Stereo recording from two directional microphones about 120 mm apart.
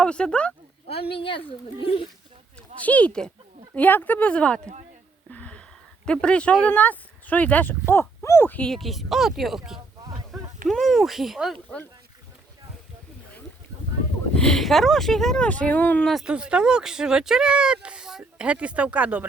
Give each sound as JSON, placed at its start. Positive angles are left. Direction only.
{"t": 0.0, "sound": "speech", "side_deg": 10}
{"t": 0.9, "sound": "speech", "side_deg": 50}
{"t": 2.8, "sound": "speech", "side_deg": 10}
{"t": 5.3, "sound": "a sound", "side_deg": 10}
{"t": 6.1, "sound": "speech", "side_deg": 10}
{"t": 11.5, "sound": "speech", "side_deg": 10}
{"t": 14.3, "sound": "speech", "side_deg": 5}
{"t": 16.0, "sound": "speech", "side_deg": -5}